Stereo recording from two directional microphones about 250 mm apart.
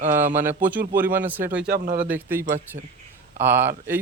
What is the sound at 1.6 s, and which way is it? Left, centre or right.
Speech, right.